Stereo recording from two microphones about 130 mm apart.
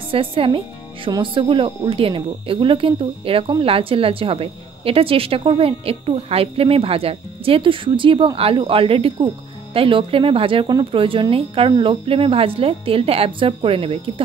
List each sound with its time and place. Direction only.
0.1 s speech: 45° right (ahead or behind)